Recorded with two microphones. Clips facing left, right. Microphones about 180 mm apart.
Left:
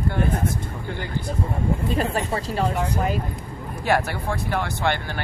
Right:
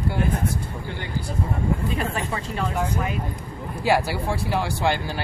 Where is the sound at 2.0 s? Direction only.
35° left (ahead or behind).